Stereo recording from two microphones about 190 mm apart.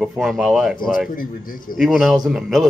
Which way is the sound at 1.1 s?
45° left (ahead or behind).